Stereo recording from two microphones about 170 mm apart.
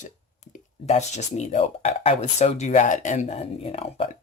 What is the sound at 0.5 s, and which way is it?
Speech, 40° left (ahead or behind).